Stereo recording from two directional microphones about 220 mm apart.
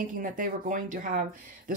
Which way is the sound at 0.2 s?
35° right (ahead or behind).